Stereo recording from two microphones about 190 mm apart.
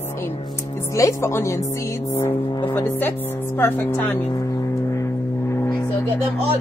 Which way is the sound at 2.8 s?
10° left (ahead or behind).